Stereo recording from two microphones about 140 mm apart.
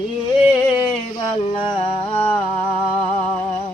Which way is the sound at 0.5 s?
35° left (ahead or behind).